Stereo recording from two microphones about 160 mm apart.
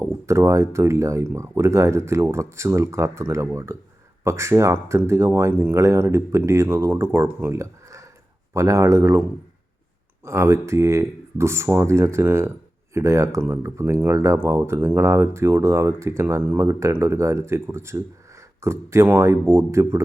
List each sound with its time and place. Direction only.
0.0 s speech: 15° right (ahead or behind)
10.2 s speech: 15° right (ahead or behind)